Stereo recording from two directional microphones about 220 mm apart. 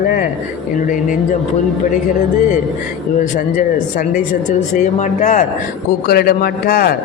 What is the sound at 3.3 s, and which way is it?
Mantra, 35° left (ahead or behind).